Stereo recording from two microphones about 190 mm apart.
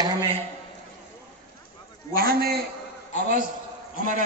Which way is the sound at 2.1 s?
55° right (ahead or behind).